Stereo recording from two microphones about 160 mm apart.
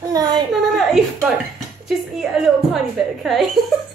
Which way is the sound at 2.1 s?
Centre (ahead or behind).